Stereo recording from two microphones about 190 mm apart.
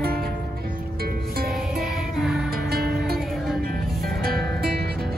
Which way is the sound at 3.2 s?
Centre (ahead or behind).